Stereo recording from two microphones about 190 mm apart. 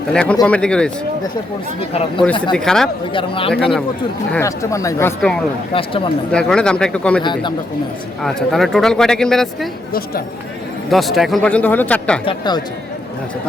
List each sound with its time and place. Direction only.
0.1 s speech: 5° left (ahead or behind)
1.9 s speech: 30° left (ahead or behind)
2.5 s speech: 5° left (ahead or behind)
3.1 s speech: 25° left (ahead or behind)
3.5 s speech: 5° left (ahead or behind)
4.3 s speech: 15° left (ahead or behind)
7.2 s speech: 25° left (ahead or behind)
8.2 s speech: centre (ahead or behind)
10.9 s speech: centre (ahead or behind)
12.2 s speech: 25° left (ahead or behind)